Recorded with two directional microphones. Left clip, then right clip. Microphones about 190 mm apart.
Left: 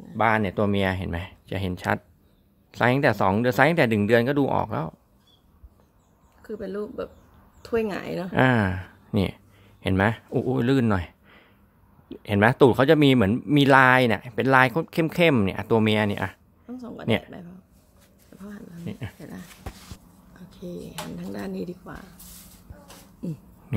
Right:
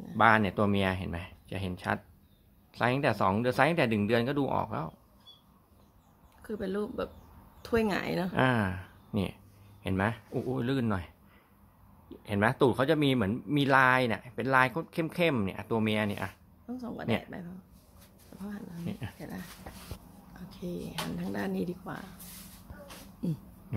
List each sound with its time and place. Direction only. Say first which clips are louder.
0.2 s speech: left 2 dB; 30° left (ahead or behind)
6.4 s speech: left 3 dB; 5° left (ahead or behind)
8.3 s speech: left 8 dB; 45° left (ahead or behind)
16.6 s speech: left 6 dB; 10° left (ahead or behind)
18.3 s a sound: left 1 dB; 10° left (ahead or behind)
18.9 s speech: left 5 dB; 45° left (ahead or behind)
19.1 s speech: left 1 dB; 15° left (ahead or behind)
20.3 s a sound: left 1 dB; 10° left (ahead or behind)
21.2 s speech: left 2 dB; 5° left (ahead or behind)